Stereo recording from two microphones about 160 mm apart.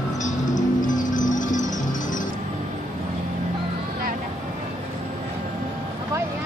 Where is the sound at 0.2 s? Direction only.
50° left (ahead or behind).